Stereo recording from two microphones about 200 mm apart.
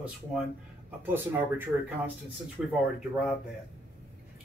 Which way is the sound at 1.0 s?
10° right (ahead or behind).